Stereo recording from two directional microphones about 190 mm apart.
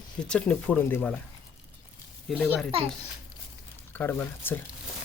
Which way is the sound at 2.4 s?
Centre (ahead or behind).